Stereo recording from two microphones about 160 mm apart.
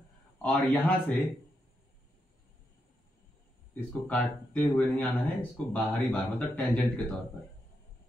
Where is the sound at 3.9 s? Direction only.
10° left (ahead or behind).